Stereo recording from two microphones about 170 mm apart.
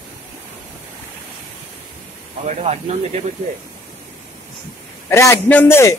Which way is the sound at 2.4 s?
40° right (ahead or behind).